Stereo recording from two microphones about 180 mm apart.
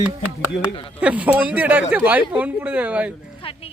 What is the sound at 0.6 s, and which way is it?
Speech, 30° left (ahead or behind).